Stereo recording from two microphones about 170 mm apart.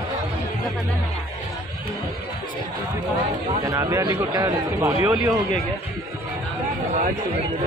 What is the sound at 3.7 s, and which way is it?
A man's voice, 20° right (ahead or behind).